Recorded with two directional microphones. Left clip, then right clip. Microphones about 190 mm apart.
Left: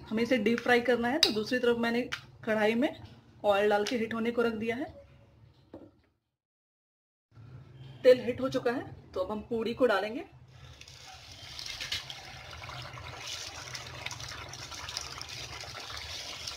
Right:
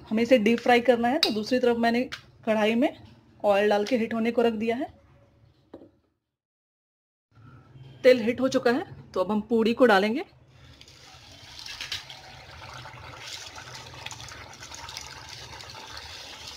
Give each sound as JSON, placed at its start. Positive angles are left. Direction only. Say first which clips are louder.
{"t": 0.1, "sound": "speech", "louder": "right 7 dB", "side_deg": -30}
{"t": 8.0, "sound": "a woman's voice", "louder": "right 3 dB", "side_deg": -40}